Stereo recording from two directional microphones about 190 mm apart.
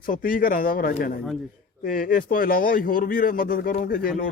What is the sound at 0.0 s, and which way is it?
A man's voice, 45° left (ahead or behind).